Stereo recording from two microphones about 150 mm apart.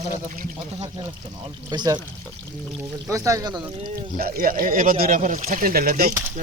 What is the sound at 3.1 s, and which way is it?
Speech, 20° right (ahead or behind).